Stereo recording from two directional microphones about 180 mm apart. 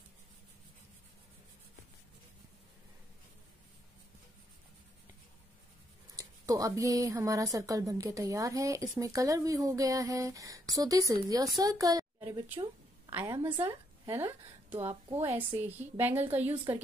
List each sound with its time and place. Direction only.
6.1 s a woman's voice: 20° right (ahead or behind)
14.8 s a woman's voice: 35° right (ahead or behind)
15.1 s a woman's voice: 10° right (ahead or behind)